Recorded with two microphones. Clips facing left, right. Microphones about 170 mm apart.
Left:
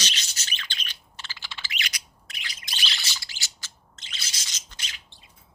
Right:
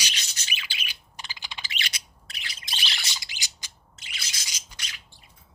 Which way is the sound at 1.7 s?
25° right (ahead or behind).